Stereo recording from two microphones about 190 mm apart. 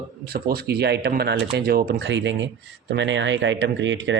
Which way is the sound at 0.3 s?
55° right (ahead or behind).